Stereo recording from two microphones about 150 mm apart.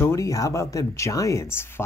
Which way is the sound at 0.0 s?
20° left (ahead or behind).